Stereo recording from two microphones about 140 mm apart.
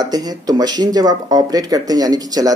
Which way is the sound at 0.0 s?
30° right (ahead or behind).